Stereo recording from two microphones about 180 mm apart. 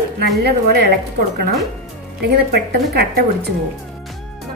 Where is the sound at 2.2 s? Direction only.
60° right (ahead or behind).